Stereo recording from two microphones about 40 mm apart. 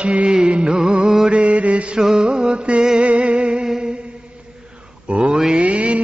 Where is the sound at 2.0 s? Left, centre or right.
Centre.